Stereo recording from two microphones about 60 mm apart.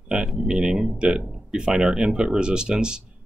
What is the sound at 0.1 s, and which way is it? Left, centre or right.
Speech, centre.